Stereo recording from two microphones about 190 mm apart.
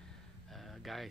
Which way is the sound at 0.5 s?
Centre (ahead or behind).